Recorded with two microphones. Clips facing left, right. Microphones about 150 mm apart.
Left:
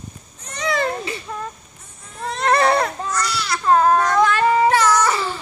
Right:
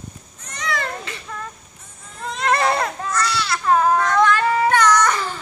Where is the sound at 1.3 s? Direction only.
20° left (ahead or behind).